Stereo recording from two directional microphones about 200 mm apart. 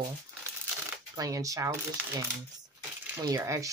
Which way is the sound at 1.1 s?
15° right (ahead or behind).